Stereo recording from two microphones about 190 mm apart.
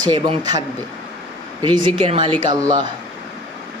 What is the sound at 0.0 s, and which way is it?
Speech, 25° right (ahead or behind).